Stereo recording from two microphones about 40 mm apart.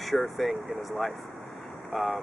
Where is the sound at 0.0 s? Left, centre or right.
Centre.